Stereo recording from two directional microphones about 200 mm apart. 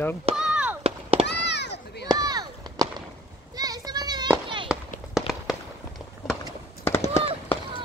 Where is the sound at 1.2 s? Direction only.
60° left (ahead or behind).